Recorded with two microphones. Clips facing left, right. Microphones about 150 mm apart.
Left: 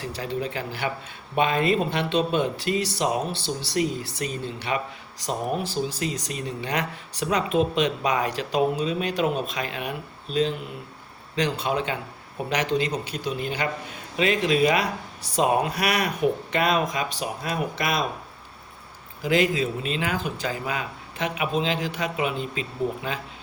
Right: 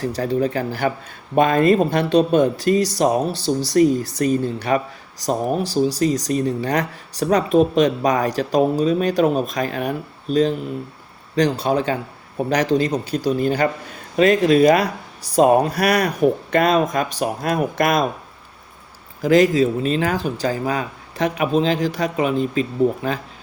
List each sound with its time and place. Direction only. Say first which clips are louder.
0.0 s speech: right 9 dB; 40° right (ahead or behind)
19.2 s speech: right 8 dB; 40° right (ahead or behind)